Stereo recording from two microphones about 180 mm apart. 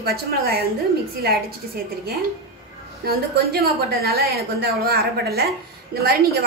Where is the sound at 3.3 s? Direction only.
60° right (ahead or behind).